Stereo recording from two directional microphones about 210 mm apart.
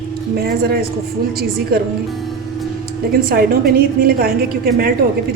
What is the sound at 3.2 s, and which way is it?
A woman's voice, 45° right (ahead or behind).